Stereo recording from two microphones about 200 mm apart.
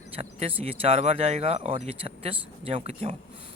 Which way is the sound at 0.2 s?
30° right (ahead or behind).